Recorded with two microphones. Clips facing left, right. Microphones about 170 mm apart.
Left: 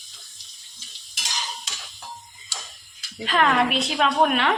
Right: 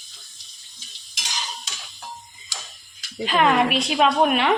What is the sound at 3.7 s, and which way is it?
Speech, 15° right (ahead or behind).